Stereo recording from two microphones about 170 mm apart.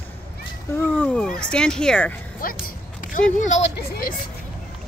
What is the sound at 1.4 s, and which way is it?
Speech, 5° left (ahead or behind).